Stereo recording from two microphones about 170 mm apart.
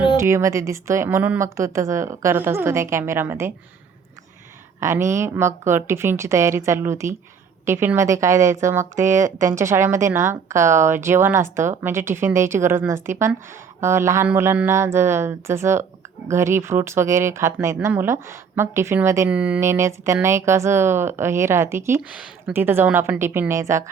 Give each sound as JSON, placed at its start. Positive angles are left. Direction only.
{"t": 0.2, "sound": "a woman's voice", "side_deg": -15}
{"t": 4.8, "sound": "a woman's voice", "side_deg": -15}